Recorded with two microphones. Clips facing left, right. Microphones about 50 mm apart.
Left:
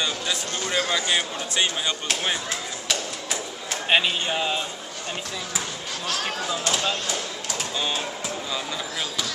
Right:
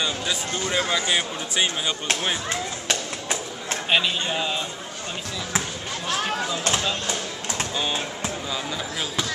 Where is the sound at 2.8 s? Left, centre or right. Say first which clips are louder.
Left 1 dB; right.